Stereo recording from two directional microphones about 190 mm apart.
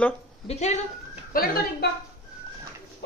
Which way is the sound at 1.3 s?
50° left (ahead or behind).